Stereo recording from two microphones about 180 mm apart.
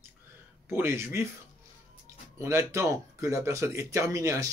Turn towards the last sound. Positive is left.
turn(degrees=-15)  # may be behind; listen again after turning